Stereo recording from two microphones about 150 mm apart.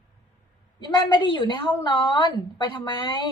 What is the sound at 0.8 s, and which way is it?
A woman's voice, 30° left (ahead or behind).